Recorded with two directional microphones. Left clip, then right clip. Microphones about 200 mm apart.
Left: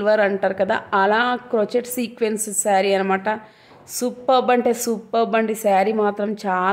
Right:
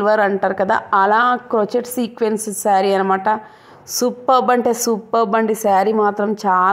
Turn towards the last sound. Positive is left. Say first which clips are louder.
# right 6 dB
turn(degrees=-10)  # may be behind; listen again after turning